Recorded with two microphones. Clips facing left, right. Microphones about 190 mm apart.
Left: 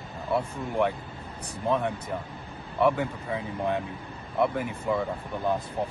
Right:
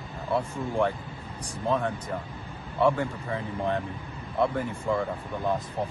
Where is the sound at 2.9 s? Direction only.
10° left (ahead or behind).